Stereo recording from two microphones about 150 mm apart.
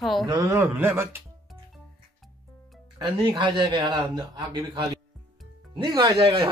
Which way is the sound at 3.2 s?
30° right (ahead or behind).